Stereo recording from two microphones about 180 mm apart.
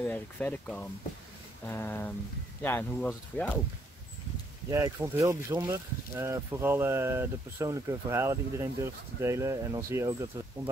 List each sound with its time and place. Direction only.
0.0 s speech: 10° left (ahead or behind)
4.6 s speech: 15° right (ahead or behind)